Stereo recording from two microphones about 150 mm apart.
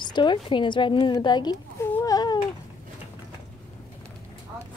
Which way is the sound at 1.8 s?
20° left (ahead or behind).